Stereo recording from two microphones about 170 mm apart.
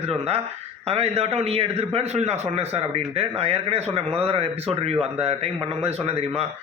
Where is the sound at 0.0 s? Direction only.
35° right (ahead or behind).